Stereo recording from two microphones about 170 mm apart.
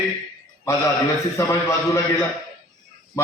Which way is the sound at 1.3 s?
15° left (ahead or behind).